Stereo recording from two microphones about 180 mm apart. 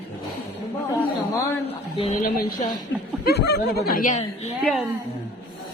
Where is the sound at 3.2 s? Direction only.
65° left (ahead or behind); by 4.2 s 45° left (ahead or behind).